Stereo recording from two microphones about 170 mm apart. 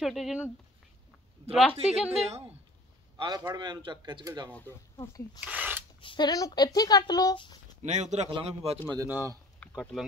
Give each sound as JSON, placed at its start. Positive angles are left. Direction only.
{"t": 0.0, "sound": "speech", "side_deg": 0}
{"t": 1.5, "sound": "speech", "side_deg": 0}
{"t": 3.2, "sound": "a man's voice", "side_deg": -25}
{"t": 4.5, "sound": "speech", "side_deg": 10}
{"t": 4.9, "sound": "speech", "side_deg": 20}
{"t": 5.4, "sound": "speech", "side_deg": -10}
{"t": 5.9, "sound": "speech", "side_deg": 25}
{"t": 7.8, "sound": "a man's voice", "side_deg": -40}
{"t": 8.8, "sound": "a man's voice", "side_deg": -20}
{"t": 9.6, "sound": "a sound", "side_deg": 0}